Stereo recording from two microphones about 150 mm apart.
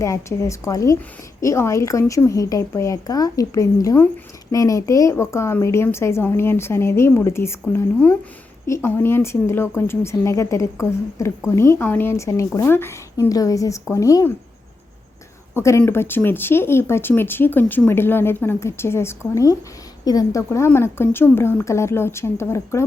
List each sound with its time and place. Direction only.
0.0 s a woman's voice: 20° left (ahead or behind)
15.5 s a woman's voice: 20° left (ahead or behind)